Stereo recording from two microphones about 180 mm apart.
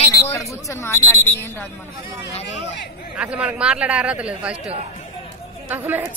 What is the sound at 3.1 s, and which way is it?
Speech, 5° right (ahead or behind).